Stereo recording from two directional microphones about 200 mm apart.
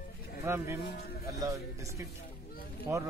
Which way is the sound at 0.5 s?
10° right (ahead or behind).